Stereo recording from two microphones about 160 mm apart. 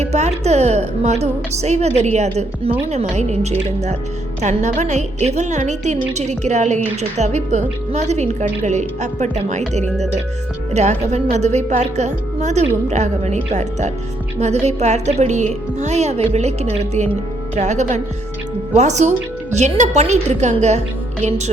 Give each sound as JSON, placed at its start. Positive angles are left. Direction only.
{"t": 0.0, "sound": "a woman's voice", "side_deg": -45}